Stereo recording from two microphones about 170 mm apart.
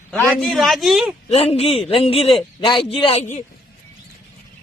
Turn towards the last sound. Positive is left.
turn(degrees=45)  # may be behind; listen again after turning